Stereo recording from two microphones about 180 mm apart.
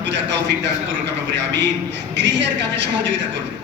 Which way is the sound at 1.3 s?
80° right.